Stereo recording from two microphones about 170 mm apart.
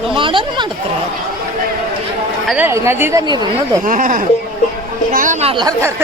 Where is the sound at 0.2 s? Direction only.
30° right (ahead or behind).